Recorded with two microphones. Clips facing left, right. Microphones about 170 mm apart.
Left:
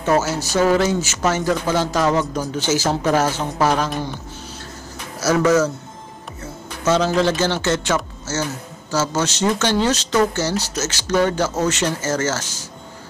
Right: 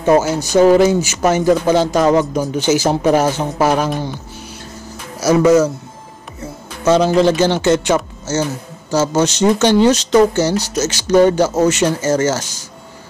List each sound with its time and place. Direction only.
0.0 s speech: 15° right (ahead or behind)
5.2 s speech: 10° right (ahead or behind)
6.4 s music: 15° right (ahead or behind)
7.2 s speech: 15° right (ahead or behind)